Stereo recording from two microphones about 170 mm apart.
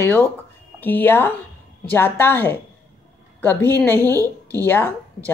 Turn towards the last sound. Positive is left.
turn(degrees=10)  # may be behind; listen again after turning